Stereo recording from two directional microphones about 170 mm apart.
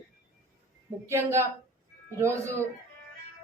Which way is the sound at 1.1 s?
15° right (ahead or behind).